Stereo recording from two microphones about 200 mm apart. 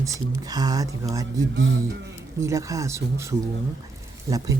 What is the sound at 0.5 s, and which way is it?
Speech, 20° right (ahead or behind).